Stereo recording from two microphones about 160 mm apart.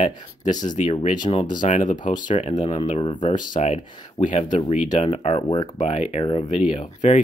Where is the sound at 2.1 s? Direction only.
25° left (ahead or behind).